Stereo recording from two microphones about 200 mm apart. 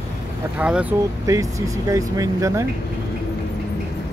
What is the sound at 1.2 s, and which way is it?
Speech, 15° right (ahead or behind).